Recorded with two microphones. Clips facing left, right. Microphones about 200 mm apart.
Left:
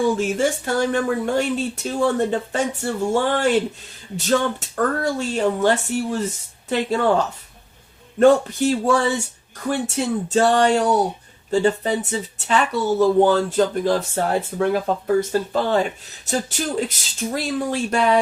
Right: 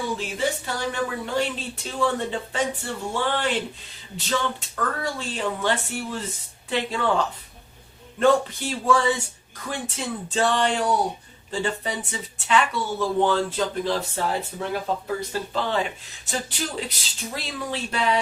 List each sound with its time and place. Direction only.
0.2 s speech: 50° left (ahead or behind)
8.2 s speech: 45° left (ahead or behind)
10.3 s speech: 45° left (ahead or behind)